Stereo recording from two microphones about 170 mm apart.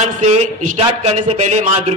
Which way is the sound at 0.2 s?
40° right (ahead or behind).